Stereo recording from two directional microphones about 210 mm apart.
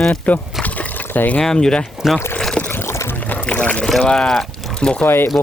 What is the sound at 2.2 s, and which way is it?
Boat, 5° left (ahead or behind).